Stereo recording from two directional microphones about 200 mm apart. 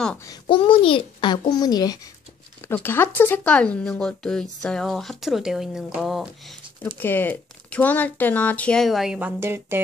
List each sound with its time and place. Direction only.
0.2 s a child's voice: 20° left (ahead or behind); by 9.8 s 10° right (ahead or behind)